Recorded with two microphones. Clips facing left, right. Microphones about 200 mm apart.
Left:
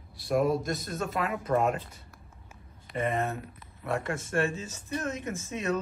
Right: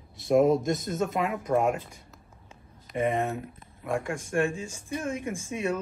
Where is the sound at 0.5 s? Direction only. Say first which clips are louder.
Right 4 dB; centre (ahead or behind).